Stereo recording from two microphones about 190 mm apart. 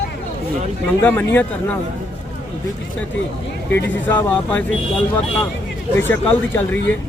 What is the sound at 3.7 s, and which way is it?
Speech, 10° left (ahead or behind).